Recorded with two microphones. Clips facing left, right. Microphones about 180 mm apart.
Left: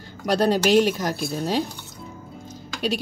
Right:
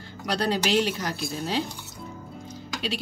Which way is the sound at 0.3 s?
45° left (ahead or behind).